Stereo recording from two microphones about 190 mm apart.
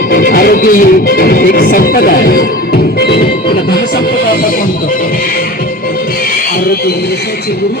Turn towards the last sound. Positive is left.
turn(degrees=55)  # may be behind; listen again after turning